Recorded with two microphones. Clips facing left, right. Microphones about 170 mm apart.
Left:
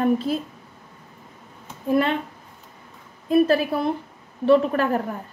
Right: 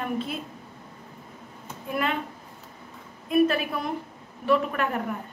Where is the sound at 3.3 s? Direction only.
30° left (ahead or behind).